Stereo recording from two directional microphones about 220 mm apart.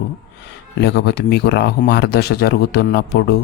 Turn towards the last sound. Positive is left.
turn(degrees=45)  # may be behind; listen again after turning